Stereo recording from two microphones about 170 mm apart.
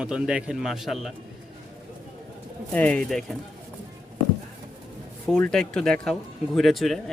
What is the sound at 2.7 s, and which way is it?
Speech, 10° left (ahead or behind).